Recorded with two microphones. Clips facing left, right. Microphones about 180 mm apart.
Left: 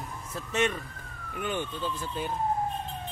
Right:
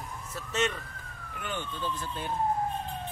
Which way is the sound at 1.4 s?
15° left (ahead or behind).